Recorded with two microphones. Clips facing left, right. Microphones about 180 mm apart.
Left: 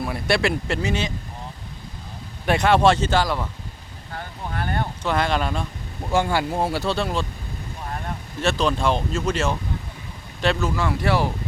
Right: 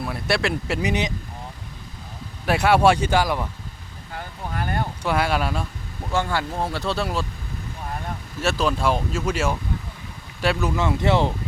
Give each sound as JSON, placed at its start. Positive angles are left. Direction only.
{"t": 0.0, "sound": "speech", "side_deg": 0}
{"t": 0.8, "sound": "speech", "side_deg": -15}
{"t": 2.5, "sound": "speech", "side_deg": -5}
{"t": 4.7, "sound": "speech", "side_deg": -10}
{"t": 6.1, "sound": "speech", "side_deg": 15}
{"t": 8.4, "sound": "speech", "side_deg": -5}
{"t": 10.8, "sound": "speech", "side_deg": -20}